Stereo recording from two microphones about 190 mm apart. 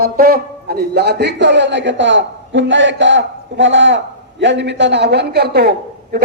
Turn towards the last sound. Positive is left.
turn(degrees=-55)  # may be behind; listen again after turning